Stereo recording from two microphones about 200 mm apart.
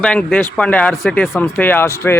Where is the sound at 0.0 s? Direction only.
5° left (ahead or behind).